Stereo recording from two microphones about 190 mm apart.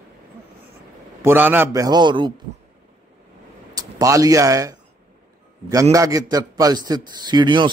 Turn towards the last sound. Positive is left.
turn(degrees=-25)  # may be behind; listen again after turning